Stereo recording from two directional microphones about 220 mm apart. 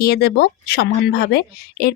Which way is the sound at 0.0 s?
45° left (ahead or behind).